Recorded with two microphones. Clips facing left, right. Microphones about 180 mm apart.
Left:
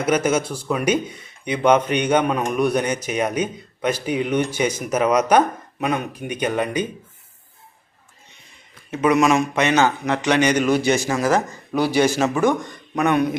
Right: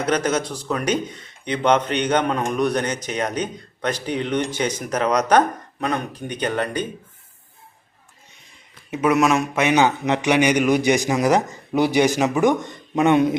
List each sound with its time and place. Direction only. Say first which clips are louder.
0.0 s speech: left 2 dB; 10° left (ahead or behind)
8.9 s a man's voice: left 1 dB; 5° right (ahead or behind); by 13.3 s 25° right (ahead or behind)